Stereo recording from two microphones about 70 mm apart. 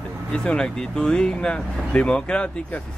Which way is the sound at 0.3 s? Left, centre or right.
Centre.